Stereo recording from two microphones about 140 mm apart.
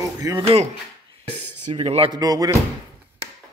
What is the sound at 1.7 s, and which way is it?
Speech, 45° right (ahead or behind).